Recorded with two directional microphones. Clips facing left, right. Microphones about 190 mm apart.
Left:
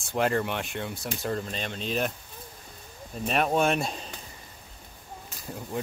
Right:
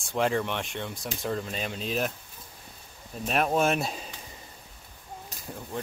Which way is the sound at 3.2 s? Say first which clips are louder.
Even; centre (ahead or behind).